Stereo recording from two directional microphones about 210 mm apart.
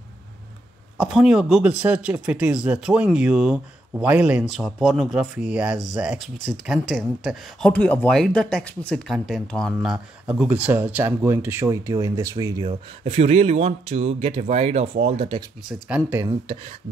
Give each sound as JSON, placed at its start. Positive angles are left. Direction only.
{"t": 1.1, "sound": "speech", "side_deg": -5}